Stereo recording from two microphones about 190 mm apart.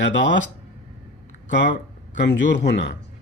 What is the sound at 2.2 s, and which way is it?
Speech, 70° left (ahead or behind).